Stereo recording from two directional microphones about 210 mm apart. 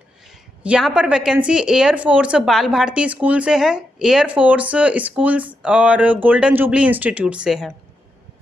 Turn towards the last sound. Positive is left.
turn(degrees=-5)  # may be behind; listen again after turning